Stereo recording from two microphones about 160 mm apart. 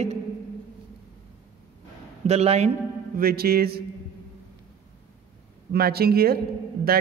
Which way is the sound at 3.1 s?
70° right (ahead or behind).